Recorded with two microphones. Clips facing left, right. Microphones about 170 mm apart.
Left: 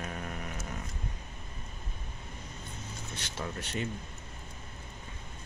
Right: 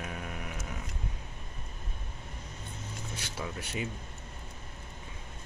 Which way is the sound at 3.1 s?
10° right (ahead or behind).